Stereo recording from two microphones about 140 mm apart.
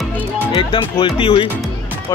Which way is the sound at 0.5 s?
35° left (ahead or behind).